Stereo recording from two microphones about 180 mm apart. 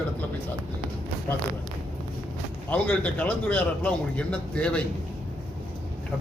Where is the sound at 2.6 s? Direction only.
10° left (ahead or behind).